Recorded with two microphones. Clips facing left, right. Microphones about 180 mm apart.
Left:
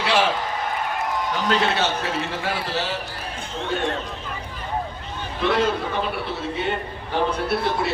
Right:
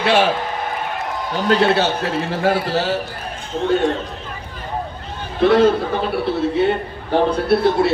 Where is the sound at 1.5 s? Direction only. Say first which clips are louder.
Right 7 dB; 35° right (ahead or behind).